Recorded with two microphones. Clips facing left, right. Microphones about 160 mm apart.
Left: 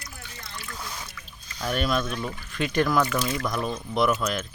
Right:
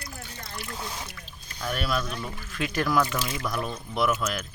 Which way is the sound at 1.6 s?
Centre (ahead or behind).